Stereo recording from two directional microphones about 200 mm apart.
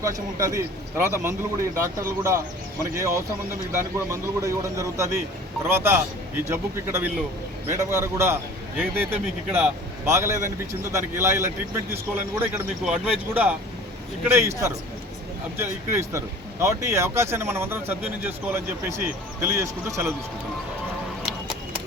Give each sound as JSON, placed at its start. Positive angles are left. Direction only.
{"t": 0.0, "sound": "speech", "side_deg": -15}